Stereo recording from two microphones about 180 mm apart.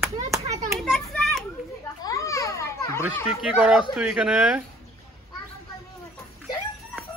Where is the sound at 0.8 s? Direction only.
Centre (ahead or behind).